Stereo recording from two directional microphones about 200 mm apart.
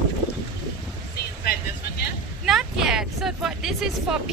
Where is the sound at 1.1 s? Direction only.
50° left (ahead or behind).